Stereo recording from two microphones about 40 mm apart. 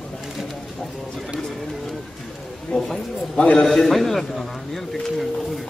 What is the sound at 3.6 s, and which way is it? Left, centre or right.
Speech, centre.